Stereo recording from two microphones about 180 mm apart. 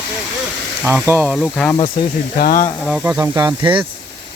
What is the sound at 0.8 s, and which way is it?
Speech, 10° right (ahead or behind).